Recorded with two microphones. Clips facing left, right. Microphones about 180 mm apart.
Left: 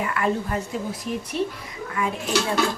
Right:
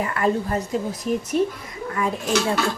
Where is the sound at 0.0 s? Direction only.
35° right (ahead or behind).